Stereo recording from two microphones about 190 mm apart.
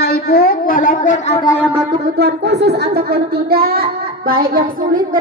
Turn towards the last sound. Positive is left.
turn(degrees=-50)  # may be behind; listen again after turning